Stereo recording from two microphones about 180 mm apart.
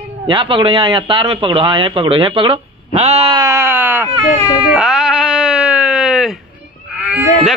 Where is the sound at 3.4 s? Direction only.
15° right (ahead or behind).